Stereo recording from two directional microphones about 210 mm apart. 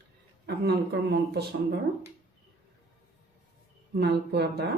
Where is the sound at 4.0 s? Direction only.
50° right (ahead or behind).